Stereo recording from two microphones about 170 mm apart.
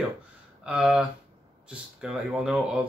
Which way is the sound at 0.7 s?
5° right (ahead or behind).